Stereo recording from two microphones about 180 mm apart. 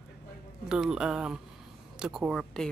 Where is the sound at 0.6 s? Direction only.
5° right (ahead or behind).